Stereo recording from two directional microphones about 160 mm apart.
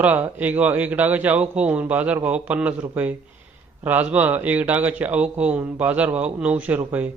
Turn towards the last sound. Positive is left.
turn(degrees=-10)  # may be behind; listen again after turning